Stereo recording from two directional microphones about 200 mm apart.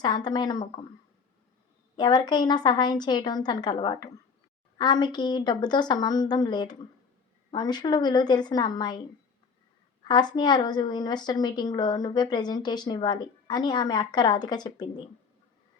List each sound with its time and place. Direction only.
0.0 s a woman's voice: 20° left (ahead or behind)
2.0 s a woman's voice: 20° left (ahead or behind)
10.0 s a woman's voice: 20° left (ahead or behind)